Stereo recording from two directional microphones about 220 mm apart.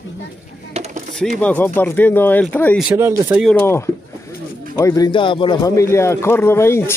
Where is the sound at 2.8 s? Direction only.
10° right (ahead or behind).